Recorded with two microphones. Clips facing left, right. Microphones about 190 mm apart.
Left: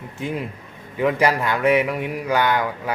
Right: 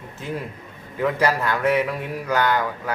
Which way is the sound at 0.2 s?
15° left (ahead or behind).